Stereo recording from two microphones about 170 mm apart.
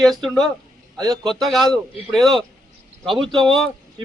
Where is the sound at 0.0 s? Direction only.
Centre (ahead or behind).